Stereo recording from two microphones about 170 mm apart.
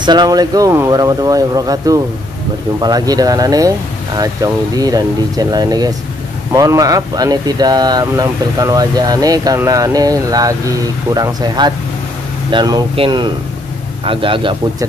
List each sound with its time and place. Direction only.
0.0 s a man's voice: 25° right (ahead or behind)